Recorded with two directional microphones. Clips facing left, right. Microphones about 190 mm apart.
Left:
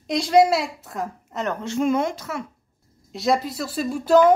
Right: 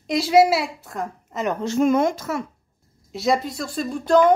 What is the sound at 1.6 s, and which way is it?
Speech, 45° right (ahead or behind).